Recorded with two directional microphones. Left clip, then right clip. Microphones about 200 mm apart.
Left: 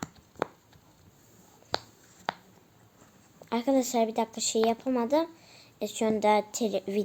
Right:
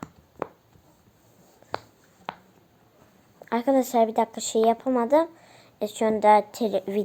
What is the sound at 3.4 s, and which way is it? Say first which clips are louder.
A woman's voice: right 4 dB; 5° right (ahead or behind).